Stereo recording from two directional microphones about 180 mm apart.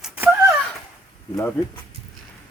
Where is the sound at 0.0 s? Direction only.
10° right (ahead or behind).